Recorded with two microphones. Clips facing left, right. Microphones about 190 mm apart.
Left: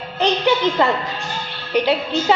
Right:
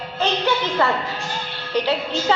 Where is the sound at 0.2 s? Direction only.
15° left (ahead or behind).